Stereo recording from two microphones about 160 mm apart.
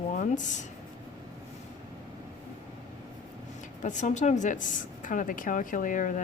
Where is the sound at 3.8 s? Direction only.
50° left (ahead or behind).